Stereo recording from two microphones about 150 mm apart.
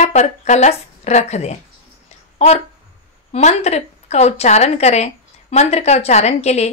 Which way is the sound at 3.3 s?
45° left (ahead or behind).